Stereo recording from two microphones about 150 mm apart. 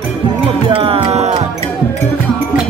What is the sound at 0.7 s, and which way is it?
Music, 40° right (ahead or behind).